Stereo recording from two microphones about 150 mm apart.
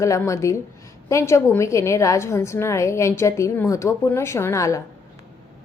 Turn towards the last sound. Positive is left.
turn(degrees=20)  # may be behind; listen again after turning